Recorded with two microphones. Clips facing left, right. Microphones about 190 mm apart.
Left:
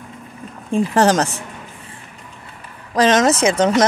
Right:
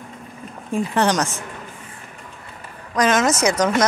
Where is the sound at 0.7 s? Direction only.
40° left (ahead or behind).